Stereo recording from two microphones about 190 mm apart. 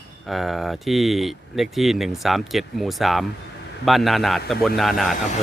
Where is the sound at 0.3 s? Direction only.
Centre (ahead or behind).